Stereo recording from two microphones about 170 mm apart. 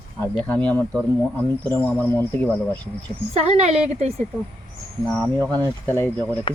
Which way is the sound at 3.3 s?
40° right (ahead or behind).